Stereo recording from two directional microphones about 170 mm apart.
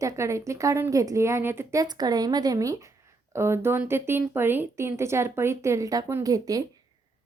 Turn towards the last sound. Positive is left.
turn(degrees=-20)  # may be behind; listen again after turning